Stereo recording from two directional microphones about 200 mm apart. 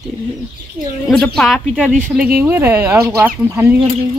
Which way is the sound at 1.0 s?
Centre (ahead or behind).